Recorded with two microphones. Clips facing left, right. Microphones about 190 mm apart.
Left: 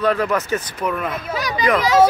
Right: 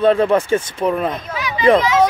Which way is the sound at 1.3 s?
40° left (ahead or behind).